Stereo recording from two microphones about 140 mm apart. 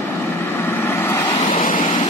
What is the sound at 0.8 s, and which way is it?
Vehicle, 20° left (ahead or behind).